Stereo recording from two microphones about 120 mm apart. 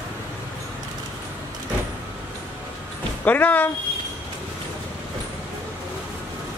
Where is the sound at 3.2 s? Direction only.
15° left (ahead or behind).